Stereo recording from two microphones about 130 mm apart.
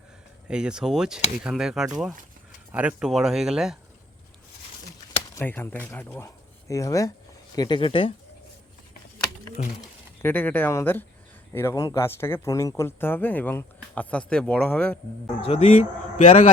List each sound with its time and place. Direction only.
0.4 s speech: 5° right (ahead or behind)
5.4 s speech: 15° left (ahead or behind); by 8.1 s 40° left (ahead or behind)
9.6 s a man's voice: 65° left (ahead or behind)
10.2 s speech: 15° left (ahead or behind)
15.4 s speech: 50° left (ahead or behind)
16.1 s a man's voice: 60° left (ahead or behind)